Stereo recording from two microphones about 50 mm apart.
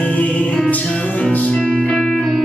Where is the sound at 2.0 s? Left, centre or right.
Centre.